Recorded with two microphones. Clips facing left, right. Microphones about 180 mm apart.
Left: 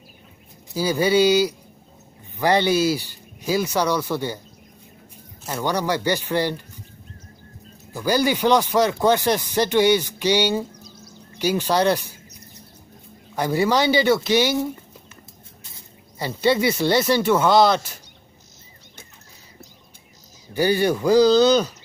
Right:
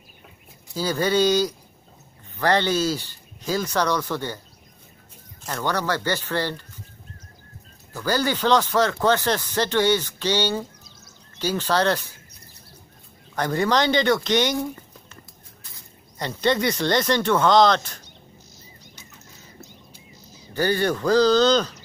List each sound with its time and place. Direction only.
0.7 s speech: 10° left (ahead or behind)
5.4 s speech: 10° left (ahead or behind)
7.9 s speech: 15° left (ahead or behind)
13.3 s speech: 10° left (ahead or behind)
16.2 s speech: 5° left (ahead or behind)
20.5 s speech: 10° left (ahead or behind)